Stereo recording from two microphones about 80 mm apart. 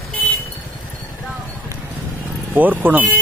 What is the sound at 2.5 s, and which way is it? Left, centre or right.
Speech, right.